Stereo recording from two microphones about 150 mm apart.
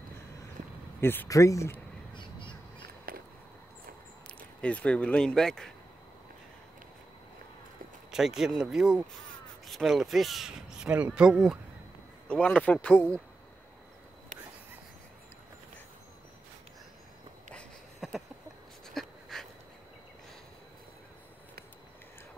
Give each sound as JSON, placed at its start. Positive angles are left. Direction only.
{"t": 1.0, "sound": "speech", "side_deg": 15}
{"t": 3.1, "sound": "a sound", "side_deg": -75}
{"t": 4.4, "sound": "speech", "side_deg": 10}
{"t": 8.1, "sound": "speech", "side_deg": -5}
{"t": 12.3, "sound": "speech", "side_deg": 5}
{"t": 17.6, "sound": "a sound", "side_deg": 0}